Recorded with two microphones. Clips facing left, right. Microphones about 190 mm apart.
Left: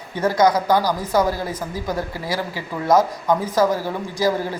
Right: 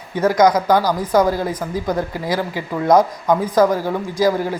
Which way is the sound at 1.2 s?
15° right (ahead or behind).